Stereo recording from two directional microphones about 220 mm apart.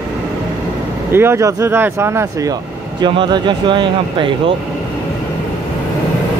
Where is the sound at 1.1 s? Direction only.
10° right (ahead or behind).